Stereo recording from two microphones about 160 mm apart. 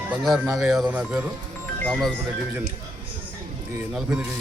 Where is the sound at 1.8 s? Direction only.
5° left (ahead or behind).